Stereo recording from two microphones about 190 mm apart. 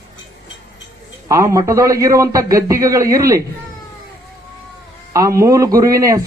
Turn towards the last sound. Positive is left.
turn(degrees=-15)  # may be behind; listen again after turning